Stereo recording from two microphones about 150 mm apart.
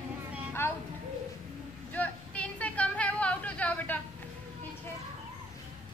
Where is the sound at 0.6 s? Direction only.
15° left (ahead or behind).